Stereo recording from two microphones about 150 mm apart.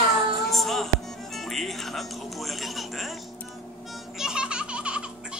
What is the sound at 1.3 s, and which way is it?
Speech, centre (ahead or behind).